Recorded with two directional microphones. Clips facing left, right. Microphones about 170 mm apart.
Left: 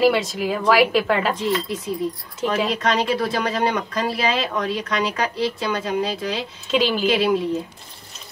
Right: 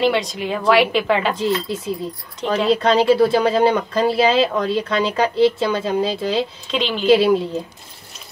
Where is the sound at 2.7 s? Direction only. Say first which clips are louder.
Right 7 dB; 30° right (ahead or behind).